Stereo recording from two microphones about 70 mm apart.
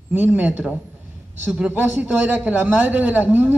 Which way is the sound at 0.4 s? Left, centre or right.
Right.